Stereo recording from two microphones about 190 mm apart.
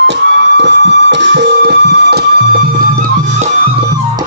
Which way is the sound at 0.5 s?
70° right (ahead or behind).